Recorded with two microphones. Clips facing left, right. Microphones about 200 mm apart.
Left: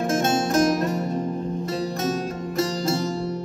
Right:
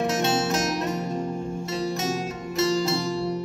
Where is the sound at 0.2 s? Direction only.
50° left (ahead or behind).